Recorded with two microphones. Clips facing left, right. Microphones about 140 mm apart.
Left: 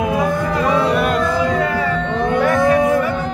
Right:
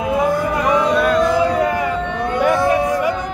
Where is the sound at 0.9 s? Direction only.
15° left (ahead or behind).